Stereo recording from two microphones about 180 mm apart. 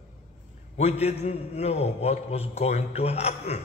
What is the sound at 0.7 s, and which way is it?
A man's voice, 35° left (ahead or behind).